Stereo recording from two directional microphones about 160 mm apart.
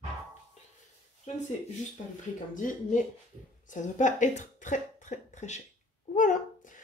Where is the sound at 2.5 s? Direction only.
55° left (ahead or behind).